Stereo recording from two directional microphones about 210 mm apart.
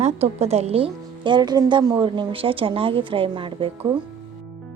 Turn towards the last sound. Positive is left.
turn(degrees=-25)  # may be behind; listen again after turning